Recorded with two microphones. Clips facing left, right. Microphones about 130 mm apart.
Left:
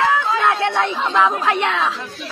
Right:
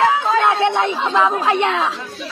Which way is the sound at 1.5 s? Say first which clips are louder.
Right 2 dB; 30° right (ahead or behind).